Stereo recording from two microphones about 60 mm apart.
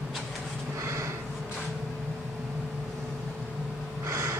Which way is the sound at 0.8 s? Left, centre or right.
Right.